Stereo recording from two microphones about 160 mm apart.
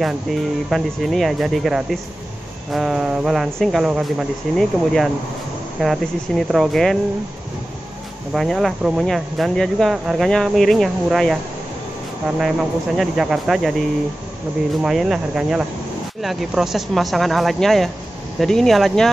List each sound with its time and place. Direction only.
0.7 s speech: centre (ahead or behind)
8.3 s speech: centre (ahead or behind)
12.4 s speech: centre (ahead or behind)